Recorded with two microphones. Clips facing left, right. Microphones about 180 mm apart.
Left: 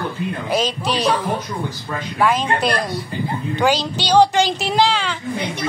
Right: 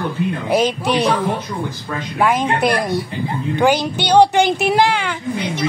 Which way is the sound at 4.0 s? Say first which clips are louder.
Right 2 dB; 60° right (ahead or behind).